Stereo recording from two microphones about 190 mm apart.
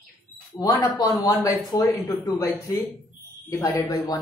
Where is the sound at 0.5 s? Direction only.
20° left (ahead or behind).